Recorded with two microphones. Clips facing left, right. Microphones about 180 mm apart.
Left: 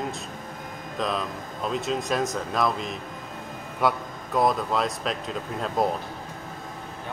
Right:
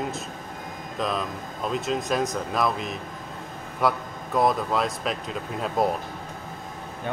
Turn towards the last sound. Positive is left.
turn(degrees=-5)  # may be behind; listen again after turning